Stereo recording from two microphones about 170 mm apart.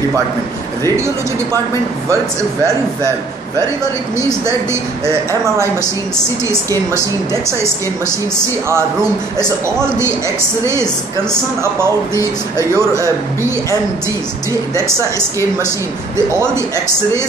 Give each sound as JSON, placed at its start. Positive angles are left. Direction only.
{"t": 0.8, "sound": "speech", "side_deg": -15}
{"t": 6.7, "sound": "speech", "side_deg": -15}
{"t": 9.8, "sound": "speech", "side_deg": -15}
{"t": 12.5, "sound": "speech", "side_deg": -15}